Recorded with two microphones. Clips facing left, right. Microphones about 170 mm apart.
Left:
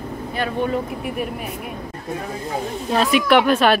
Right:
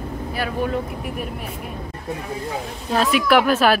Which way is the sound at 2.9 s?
Centre (ahead or behind).